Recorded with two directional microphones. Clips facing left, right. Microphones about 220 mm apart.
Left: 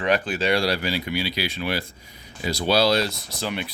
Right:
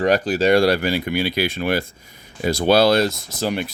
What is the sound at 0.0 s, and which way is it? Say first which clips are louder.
Speech: right 6 dB; 40° right (ahead or behind).